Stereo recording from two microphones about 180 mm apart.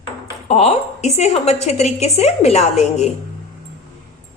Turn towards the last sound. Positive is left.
turn(degrees=35)  # may be behind; listen again after turning